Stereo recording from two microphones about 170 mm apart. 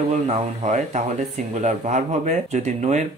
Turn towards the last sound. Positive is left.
turn(degrees=-40)  # may be behind; listen again after turning